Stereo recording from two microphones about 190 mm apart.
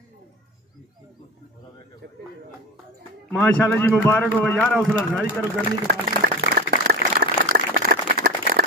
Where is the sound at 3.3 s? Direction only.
10° left (ahead or behind).